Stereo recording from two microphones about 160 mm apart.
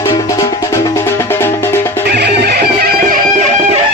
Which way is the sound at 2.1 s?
90° right.